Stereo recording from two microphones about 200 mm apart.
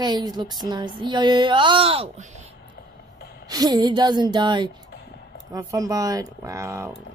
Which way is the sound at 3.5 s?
20° right (ahead or behind).